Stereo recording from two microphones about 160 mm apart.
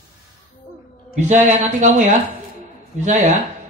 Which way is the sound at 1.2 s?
50° right (ahead or behind).